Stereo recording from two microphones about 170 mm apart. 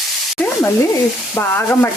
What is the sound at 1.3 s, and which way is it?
Sizzle, 15° left (ahead or behind).